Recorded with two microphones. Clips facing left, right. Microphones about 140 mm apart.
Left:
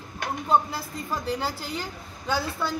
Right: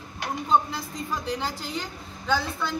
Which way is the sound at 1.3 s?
10° left (ahead or behind).